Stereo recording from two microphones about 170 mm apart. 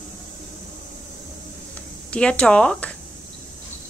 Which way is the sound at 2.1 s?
5° left (ahead or behind).